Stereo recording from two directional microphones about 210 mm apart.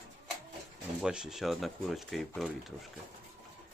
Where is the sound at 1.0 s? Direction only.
5° right (ahead or behind).